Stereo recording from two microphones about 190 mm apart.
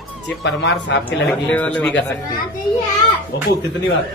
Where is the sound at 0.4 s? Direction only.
65° left (ahead or behind).